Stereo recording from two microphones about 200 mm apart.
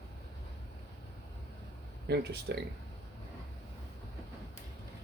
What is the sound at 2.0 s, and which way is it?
Speech, 55° right (ahead or behind).